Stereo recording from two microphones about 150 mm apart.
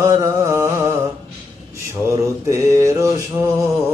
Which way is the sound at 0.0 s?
20° right (ahead or behind).